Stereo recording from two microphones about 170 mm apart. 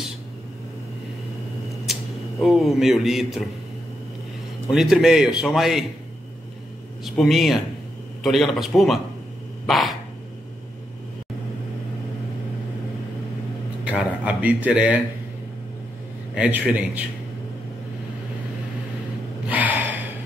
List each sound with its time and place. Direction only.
2.4 s speech: centre (ahead or behind)
4.6 s speech: centre (ahead or behind)
7.1 s speech: centre (ahead or behind)
9.7 s dog: centre (ahead or behind)
13.8 s a sound: 10° right (ahead or behind)
16.3 s a man's voice: 10° right (ahead or behind)
19.5 s gasp: 10° right (ahead or behind)